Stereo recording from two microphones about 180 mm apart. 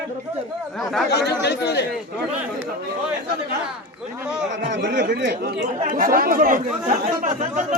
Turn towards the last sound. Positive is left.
turn(degrees=-45)  # may be behind; listen again after turning